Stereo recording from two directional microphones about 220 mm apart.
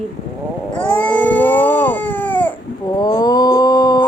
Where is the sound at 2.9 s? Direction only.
15° left (ahead or behind).